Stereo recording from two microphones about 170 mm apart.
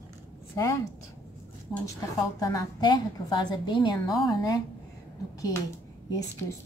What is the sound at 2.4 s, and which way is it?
A woman's voice, 20° left (ahead or behind).